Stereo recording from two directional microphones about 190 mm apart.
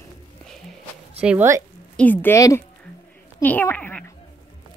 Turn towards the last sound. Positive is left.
turn(degrees=10)  # may be behind; listen again after turning